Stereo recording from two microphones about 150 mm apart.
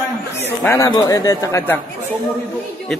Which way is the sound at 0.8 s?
25° left (ahead or behind).